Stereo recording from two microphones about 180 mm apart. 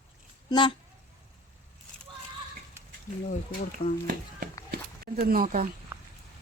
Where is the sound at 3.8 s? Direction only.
30° left (ahead or behind).